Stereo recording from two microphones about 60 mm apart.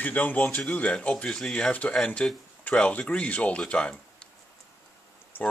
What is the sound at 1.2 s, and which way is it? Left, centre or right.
Speech, centre.